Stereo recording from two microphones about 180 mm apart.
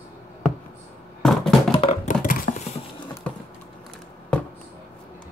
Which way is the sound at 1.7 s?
35° left (ahead or behind).